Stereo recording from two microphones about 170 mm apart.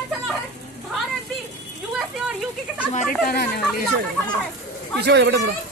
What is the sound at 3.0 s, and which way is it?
Speech, 65° left (ahead or behind).